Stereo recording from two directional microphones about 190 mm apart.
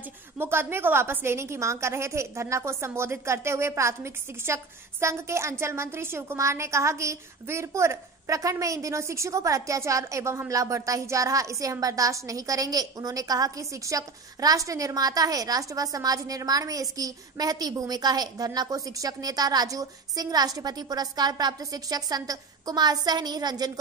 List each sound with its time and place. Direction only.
0.4 s a woman's voice: 10° right (ahead or behind)